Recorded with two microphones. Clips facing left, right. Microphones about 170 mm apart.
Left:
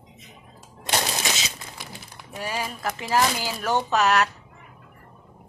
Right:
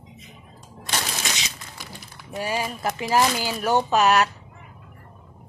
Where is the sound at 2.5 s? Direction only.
15° right (ahead or behind).